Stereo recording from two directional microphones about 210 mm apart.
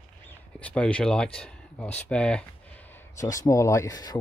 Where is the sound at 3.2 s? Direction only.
15° left (ahead or behind).